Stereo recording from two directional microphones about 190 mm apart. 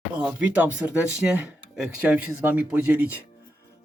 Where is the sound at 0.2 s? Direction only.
5° right (ahead or behind).